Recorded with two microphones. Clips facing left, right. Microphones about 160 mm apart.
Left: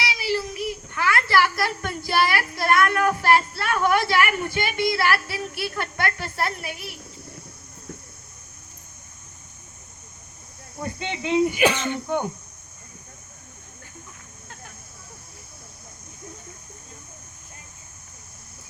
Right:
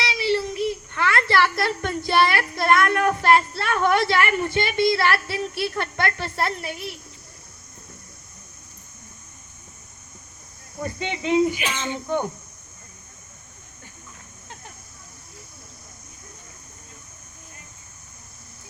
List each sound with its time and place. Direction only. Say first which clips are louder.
0.2 s a sound: right 6 dB; 25° right (ahead or behind)
10.8 s speech: right 2 dB; 20° left (ahead or behind)
11.5 s speech: left 7 dB; 70° left (ahead or behind)